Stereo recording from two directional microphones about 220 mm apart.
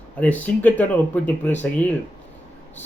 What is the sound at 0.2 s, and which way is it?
Speech, 5° left (ahead or behind).